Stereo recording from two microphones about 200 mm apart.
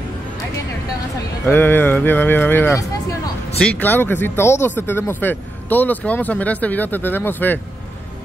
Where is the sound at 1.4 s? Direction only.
10° left (ahead or behind).